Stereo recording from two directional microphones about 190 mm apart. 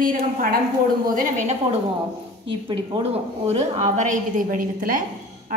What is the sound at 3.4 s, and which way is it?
A woman's voice, 35° right (ahead or behind).